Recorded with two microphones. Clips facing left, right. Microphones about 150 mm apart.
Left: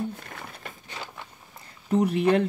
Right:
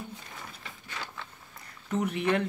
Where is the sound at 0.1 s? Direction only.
55° left (ahead or behind).